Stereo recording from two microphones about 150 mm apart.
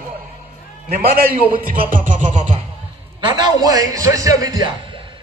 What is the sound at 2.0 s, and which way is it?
Music, 55° right (ahead or behind).